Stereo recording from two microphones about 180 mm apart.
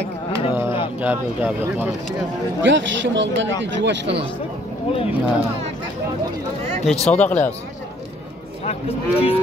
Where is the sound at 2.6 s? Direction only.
90° right.